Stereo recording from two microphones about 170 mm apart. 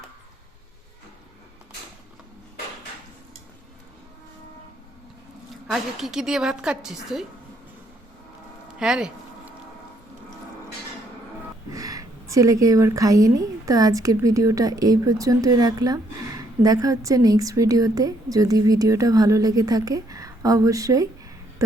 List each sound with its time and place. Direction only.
5.6 s a woman's voice: centre (ahead or behind)
8.8 s a woman's voice: 5° right (ahead or behind)
11.7 s a woman's voice: 20° right (ahead or behind)